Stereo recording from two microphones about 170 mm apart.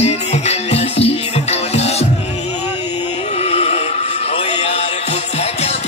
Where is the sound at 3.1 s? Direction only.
40° left (ahead or behind).